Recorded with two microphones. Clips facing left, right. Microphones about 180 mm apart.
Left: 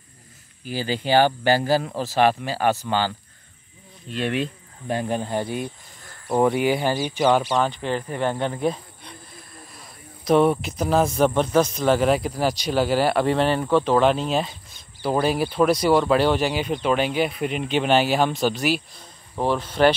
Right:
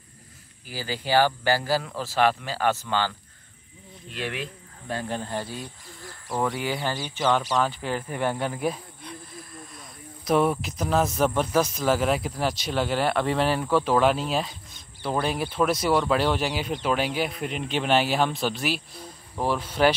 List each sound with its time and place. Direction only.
0.7 s speech: 20° left (ahead or behind)
4.1 s speech: 25° left (ahead or behind)
7.5 s speech: 5° right (ahead or behind)
10.2 s speech: centre (ahead or behind)